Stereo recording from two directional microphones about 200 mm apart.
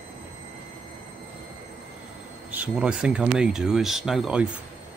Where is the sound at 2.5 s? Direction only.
5° right (ahead or behind).